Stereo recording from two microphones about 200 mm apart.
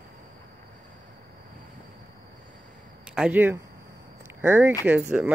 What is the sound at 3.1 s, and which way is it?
Speech, 10° right (ahead or behind).